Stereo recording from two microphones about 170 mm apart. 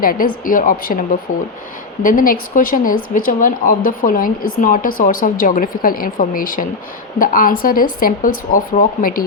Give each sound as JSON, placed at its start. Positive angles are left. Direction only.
{"t": 0.0, "sound": "a woman's voice", "side_deg": 55}